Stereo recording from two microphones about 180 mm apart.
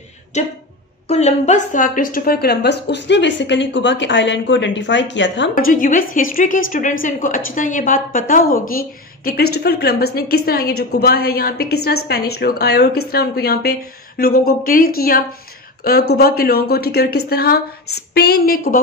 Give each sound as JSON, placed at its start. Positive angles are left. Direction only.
{"t": 0.3, "sound": "a woman's voice", "side_deg": 40}
{"t": 5.5, "sound": "a woman's voice", "side_deg": 50}